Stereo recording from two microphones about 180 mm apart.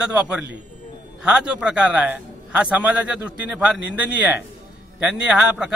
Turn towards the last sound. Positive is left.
turn(degrees=-5)  # may be behind; listen again after turning